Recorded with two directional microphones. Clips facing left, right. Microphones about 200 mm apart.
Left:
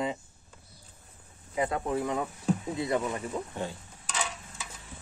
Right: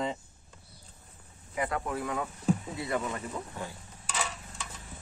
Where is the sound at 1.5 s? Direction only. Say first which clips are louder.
Left 3 dB; 25° left (ahead or behind).